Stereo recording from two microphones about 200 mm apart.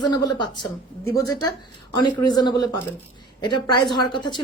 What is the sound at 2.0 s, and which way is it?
A woman's voice, 20° left (ahead or behind).